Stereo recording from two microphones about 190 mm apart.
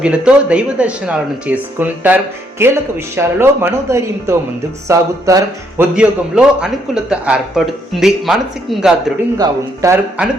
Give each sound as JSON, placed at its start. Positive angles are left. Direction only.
{"t": 0.0, "sound": "speech", "side_deg": -5}
{"t": 6.0, "sound": "a man's voice", "side_deg": -5}
{"t": 9.4, "sound": "speech", "side_deg": -15}
{"t": 10.2, "sound": "a man's voice", "side_deg": -5}